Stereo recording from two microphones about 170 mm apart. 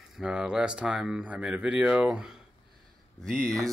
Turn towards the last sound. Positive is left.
turn(degrees=5)  # may be behind; listen again after turning